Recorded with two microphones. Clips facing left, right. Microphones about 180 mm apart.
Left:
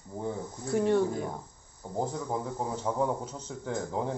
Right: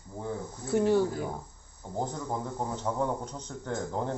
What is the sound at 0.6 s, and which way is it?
Speech, centre (ahead or behind).